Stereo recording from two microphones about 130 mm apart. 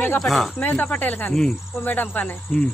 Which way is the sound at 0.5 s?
15° left (ahead or behind).